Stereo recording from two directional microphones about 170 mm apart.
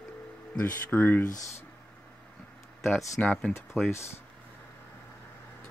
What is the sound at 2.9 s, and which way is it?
Speech, 10° left (ahead or behind).